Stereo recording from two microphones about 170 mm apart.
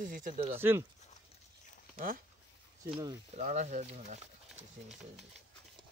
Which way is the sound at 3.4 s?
45° right (ahead or behind).